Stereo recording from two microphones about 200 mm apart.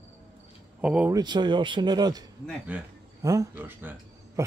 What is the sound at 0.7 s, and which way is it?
Speech, 5° right (ahead or behind).